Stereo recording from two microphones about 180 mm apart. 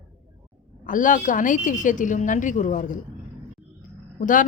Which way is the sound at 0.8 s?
45° left (ahead or behind).